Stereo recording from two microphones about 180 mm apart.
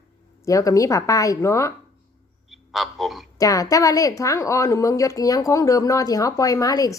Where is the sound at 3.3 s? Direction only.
20° left (ahead or behind).